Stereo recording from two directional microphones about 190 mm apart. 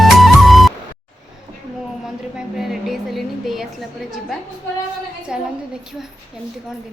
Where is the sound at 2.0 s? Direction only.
Centre (ahead or behind).